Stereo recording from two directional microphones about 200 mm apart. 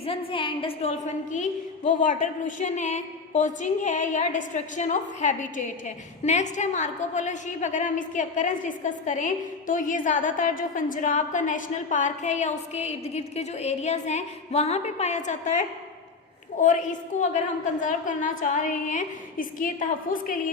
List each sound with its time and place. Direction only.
0.0 s a woman's voice: 30° left (ahead or behind)